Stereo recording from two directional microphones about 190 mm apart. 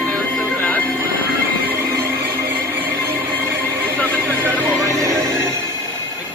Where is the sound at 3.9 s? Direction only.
10° left (ahead or behind).